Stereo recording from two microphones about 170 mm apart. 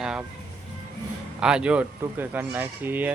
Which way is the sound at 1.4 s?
5° right (ahead or behind).